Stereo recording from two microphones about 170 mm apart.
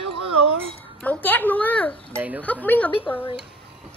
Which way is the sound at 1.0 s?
10° left (ahead or behind).